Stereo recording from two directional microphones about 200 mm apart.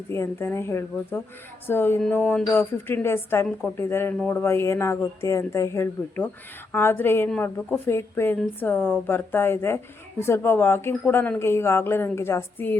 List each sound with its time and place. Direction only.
0.1 s a woman's voice: 10° left (ahead or behind)